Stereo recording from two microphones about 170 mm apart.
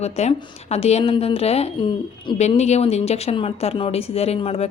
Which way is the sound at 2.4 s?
40° left (ahead or behind).